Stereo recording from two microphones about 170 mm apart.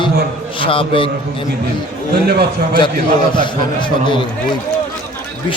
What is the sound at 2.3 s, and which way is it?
Speech, 70° right (ahead or behind).